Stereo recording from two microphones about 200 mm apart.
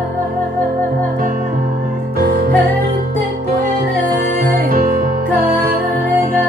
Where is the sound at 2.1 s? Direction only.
50° right (ahead or behind).